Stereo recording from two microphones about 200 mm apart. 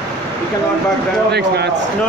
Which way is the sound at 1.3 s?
55° right (ahead or behind).